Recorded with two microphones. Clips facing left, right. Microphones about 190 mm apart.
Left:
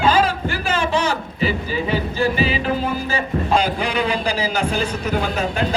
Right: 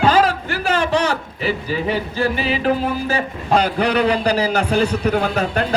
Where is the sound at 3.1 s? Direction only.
65° right (ahead or behind).